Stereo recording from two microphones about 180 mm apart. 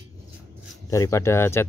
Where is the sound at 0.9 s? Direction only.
15° left (ahead or behind).